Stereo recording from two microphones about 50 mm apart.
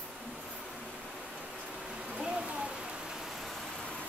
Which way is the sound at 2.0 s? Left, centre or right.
Centre.